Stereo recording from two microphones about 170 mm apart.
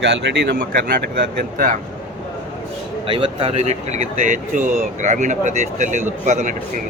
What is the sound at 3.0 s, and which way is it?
Speech, 30° right (ahead or behind).